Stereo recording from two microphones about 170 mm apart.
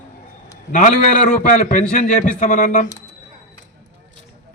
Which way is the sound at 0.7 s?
45° left (ahead or behind).